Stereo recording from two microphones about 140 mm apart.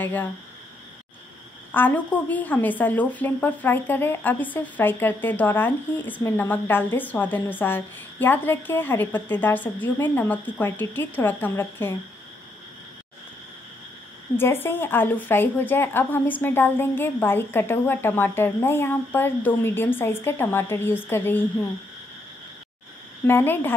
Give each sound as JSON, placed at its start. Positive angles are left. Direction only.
{"t": 0.0, "sound": "a woman's voice", "side_deg": 15}
{"t": 1.7, "sound": "a woman's voice", "side_deg": 15}
{"t": 14.3, "sound": "a woman's voice", "side_deg": 15}
{"t": 23.2, "sound": "a woman's voice", "side_deg": 15}